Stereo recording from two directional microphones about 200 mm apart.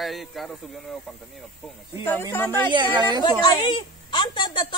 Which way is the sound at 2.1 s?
10° left (ahead or behind).